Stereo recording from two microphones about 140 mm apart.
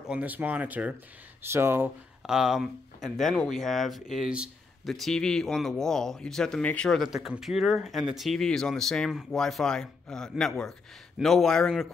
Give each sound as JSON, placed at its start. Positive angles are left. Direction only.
{"t": 0.1, "sound": "speech", "side_deg": -10}
{"t": 2.2, "sound": "speech", "side_deg": -5}